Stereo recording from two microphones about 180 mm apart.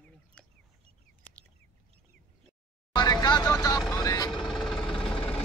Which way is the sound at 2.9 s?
25° left (ahead or behind).